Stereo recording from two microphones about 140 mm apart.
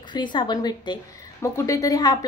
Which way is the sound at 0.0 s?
35° left (ahead or behind).